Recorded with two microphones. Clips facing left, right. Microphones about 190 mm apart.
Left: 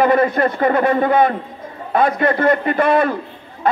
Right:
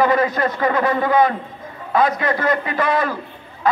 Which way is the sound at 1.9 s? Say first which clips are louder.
Left 2 dB; 55° left (ahead or behind).